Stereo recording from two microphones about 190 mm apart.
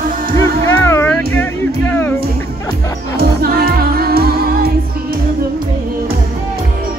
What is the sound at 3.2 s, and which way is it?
Music, 55° right (ahead or behind).